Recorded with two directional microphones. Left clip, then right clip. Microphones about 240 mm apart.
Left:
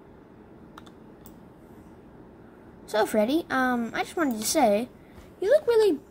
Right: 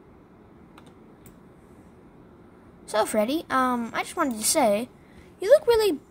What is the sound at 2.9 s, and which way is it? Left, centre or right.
A woman's voice, centre.